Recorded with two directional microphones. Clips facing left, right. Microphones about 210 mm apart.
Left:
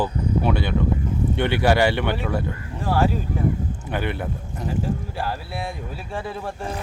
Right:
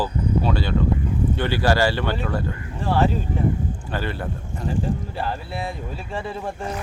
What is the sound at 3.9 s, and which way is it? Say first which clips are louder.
Speech: left 3 dB; 15° left (ahead or behind).